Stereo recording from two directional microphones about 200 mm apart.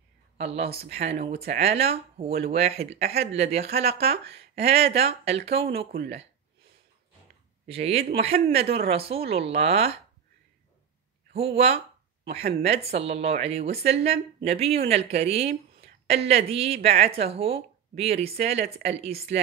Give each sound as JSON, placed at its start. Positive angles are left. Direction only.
{"t": 0.4, "sound": "speech", "side_deg": -30}
{"t": 7.6, "sound": "a woman's voice", "side_deg": -30}
{"t": 11.3, "sound": "speech", "side_deg": -30}